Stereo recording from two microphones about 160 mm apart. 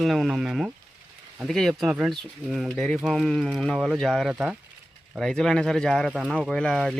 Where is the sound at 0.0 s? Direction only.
Centre (ahead or behind).